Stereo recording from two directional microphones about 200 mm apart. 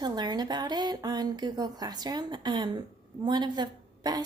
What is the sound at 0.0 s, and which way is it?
A woman's voice, 20° right (ahead or behind).